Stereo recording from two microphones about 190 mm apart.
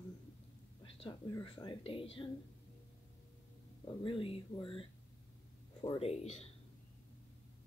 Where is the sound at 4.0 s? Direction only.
30° left (ahead or behind).